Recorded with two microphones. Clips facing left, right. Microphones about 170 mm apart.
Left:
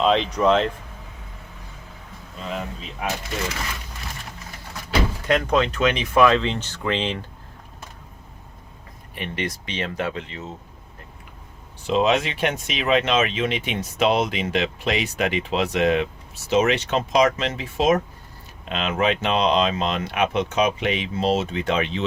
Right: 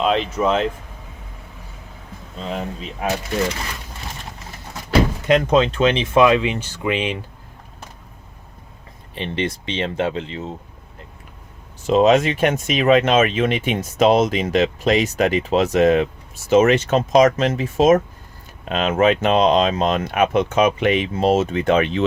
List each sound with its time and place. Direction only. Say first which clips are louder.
0.0 s speech: even; 5° right (ahead or behind)
2.4 s speech: right 4 dB; 35° right (ahead or behind)
5.2 s speech: right 3 dB; 20° right (ahead or behind)
9.1 s speech: right 5 dB; 25° right (ahead or behind)
11.9 s speech: right 6 dB; 45° right (ahead or behind)